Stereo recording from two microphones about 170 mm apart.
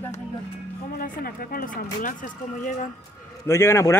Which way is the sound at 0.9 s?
60° left (ahead or behind).